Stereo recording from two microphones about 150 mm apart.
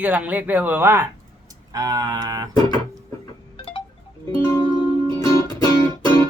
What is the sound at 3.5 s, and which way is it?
Wind chime, 35° left (ahead or behind).